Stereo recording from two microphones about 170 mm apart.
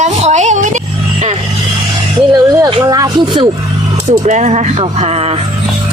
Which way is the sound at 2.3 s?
25° right (ahead or behind).